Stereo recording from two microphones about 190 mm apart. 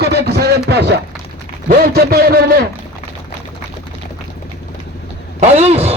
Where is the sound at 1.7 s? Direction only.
55° right (ahead or behind).